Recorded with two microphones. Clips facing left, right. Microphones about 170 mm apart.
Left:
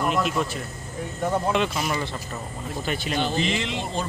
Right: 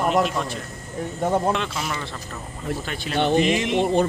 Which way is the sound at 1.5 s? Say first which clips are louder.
Left 2 dB; 5° left (ahead or behind).